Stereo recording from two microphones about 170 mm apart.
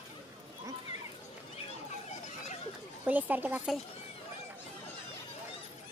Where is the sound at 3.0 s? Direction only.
10° right (ahead or behind).